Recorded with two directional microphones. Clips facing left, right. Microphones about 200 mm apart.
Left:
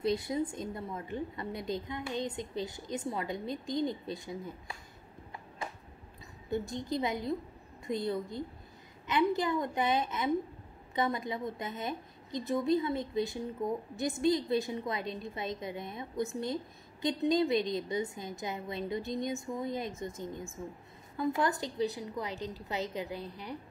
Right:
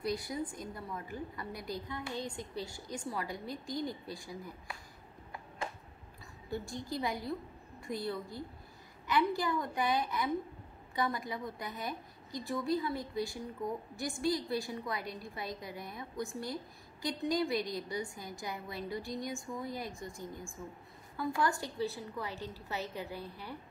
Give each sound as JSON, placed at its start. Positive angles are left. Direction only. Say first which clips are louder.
{"t": 0.0, "sound": "a woman's voice", "louder": "left 5 dB", "side_deg": 25}
{"t": 6.5, "sound": "a woman's voice", "louder": "left 5 dB", "side_deg": 20}